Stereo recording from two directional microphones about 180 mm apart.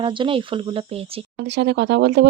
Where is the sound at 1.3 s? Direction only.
70° right (ahead or behind).